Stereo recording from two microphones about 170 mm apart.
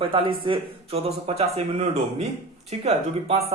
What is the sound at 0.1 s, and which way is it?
A man's voice, 30° right (ahead or behind).